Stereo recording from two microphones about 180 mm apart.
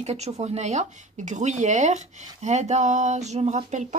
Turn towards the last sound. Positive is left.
turn(degrees=-40)  # may be behind; listen again after turning